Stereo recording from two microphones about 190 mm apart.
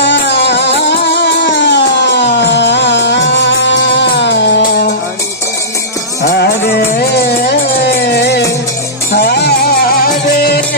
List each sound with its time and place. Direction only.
0.0 s music: 65° left (ahead or behind)
6.3 s music: 55° left (ahead or behind)